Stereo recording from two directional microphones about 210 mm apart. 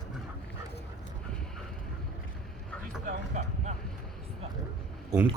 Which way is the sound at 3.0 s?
35° right (ahead or behind).